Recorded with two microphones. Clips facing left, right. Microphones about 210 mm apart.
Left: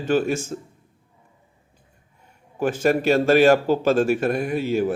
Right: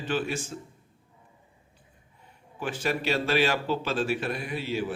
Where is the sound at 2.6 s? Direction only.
45° left (ahead or behind).